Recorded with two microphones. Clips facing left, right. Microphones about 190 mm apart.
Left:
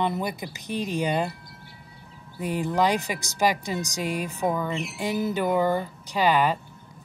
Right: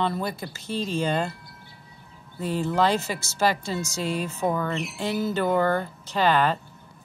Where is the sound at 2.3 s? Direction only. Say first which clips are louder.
Right 1 dB; 15° left (ahead or behind).